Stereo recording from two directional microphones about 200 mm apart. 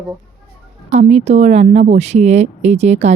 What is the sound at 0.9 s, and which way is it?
Speech, 35° right (ahead or behind).